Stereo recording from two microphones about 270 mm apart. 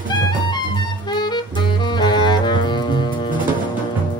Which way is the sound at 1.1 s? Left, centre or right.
Centre.